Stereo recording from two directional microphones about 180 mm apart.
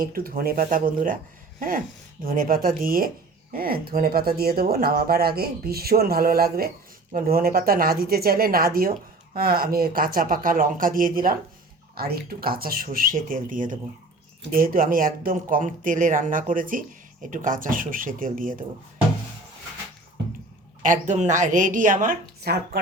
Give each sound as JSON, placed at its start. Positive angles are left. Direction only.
{"t": 0.1, "sound": "speech", "side_deg": -55}
{"t": 20.8, "sound": "speech", "side_deg": -45}